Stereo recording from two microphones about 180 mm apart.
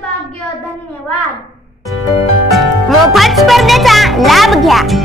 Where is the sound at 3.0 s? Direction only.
Centre (ahead or behind).